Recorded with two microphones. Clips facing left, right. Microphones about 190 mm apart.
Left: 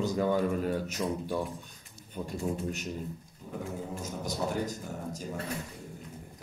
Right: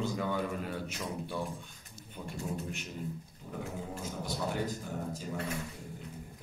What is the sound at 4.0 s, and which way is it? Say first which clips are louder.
Speech: left 2 dB; 45° left (ahead or behind).